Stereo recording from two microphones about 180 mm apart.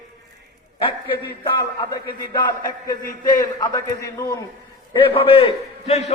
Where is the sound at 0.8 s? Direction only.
25° left (ahead or behind).